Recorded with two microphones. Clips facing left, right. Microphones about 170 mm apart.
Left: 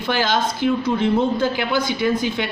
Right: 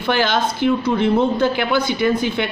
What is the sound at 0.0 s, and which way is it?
Speech, 65° right (ahead or behind).